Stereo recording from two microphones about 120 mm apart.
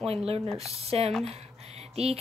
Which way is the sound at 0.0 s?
55° right (ahead or behind).